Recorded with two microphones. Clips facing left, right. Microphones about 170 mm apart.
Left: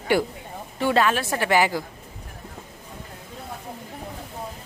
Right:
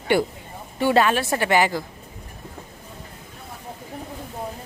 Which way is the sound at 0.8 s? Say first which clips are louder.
Right 2 dB; 5° right (ahead or behind).